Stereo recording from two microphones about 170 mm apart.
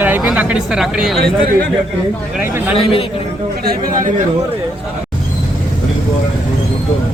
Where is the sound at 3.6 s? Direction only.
60° right (ahead or behind).